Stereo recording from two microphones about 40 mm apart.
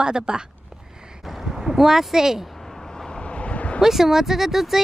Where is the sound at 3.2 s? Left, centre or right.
Left.